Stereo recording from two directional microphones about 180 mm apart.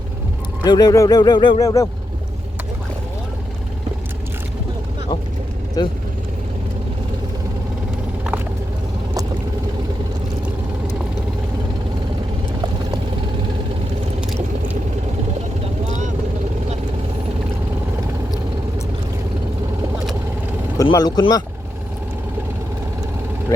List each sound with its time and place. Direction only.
0.6 s speech: 20° left (ahead or behind)
5.8 s speech: 20° left (ahead or behind)
14.2 s a sound: 10° right (ahead or behind)
20.7 s speech: 20° left (ahead or behind)
23.5 s speech: 15° left (ahead or behind)